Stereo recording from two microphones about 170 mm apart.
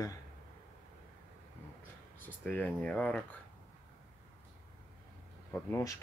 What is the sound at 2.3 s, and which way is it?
Speech, 10° left (ahead or behind).